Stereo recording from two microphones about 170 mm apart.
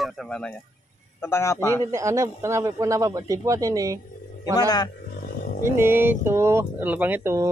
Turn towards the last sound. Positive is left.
turn(degrees=-15)  # may be behind; listen again after turning